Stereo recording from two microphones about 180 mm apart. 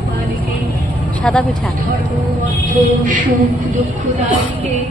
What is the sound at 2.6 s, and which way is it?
Speech, 45° right (ahead or behind).